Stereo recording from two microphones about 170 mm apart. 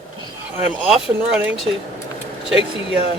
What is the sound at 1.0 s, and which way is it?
Speech, 5° right (ahead or behind).